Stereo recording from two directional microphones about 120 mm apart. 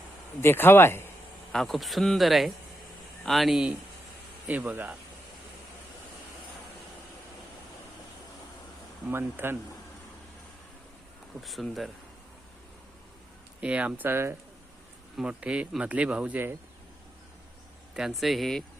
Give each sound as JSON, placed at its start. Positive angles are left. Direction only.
{"t": 0.4, "sound": "speech", "side_deg": 20}
{"t": 1.5, "sound": "speech", "side_deg": 0}
{"t": 9.0, "sound": "speech", "side_deg": -20}
{"t": 11.3, "sound": "speech", "side_deg": 0}
{"t": 13.6, "sound": "speech", "side_deg": -10}
{"t": 15.2, "sound": "speech", "side_deg": -10}
{"t": 17.9, "sound": "speech", "side_deg": 0}